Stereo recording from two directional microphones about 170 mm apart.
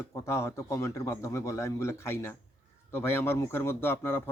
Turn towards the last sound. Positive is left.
turn(degrees=15)  # may be behind; listen again after turning